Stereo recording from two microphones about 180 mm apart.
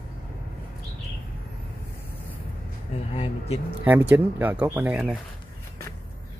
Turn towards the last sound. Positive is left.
turn(degrees=-5)  # may be behind; listen again after turning